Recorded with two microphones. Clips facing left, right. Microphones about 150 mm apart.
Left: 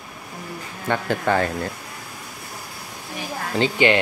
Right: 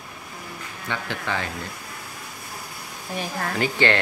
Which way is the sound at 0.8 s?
45° left (ahead or behind).